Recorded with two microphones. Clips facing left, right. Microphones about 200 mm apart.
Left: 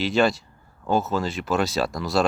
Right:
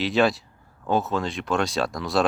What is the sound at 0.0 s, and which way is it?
Speech, centre (ahead or behind).